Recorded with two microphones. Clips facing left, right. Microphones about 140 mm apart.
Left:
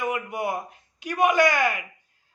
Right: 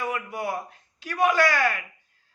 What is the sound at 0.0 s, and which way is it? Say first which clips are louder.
A man's voice: left 2 dB; 15° left (ahead or behind).